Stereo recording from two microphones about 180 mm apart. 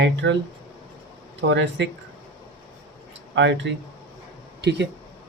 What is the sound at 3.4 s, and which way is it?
Speech, 80° right.